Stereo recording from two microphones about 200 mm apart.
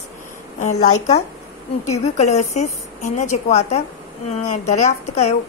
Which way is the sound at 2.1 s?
35° left (ahead or behind).